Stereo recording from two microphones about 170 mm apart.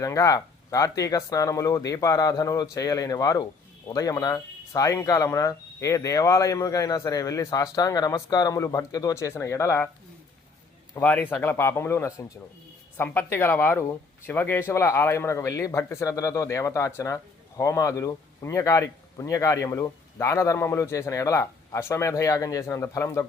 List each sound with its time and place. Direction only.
0.0 s speech: 20° left (ahead or behind)
10.9 s speech: 10° left (ahead or behind)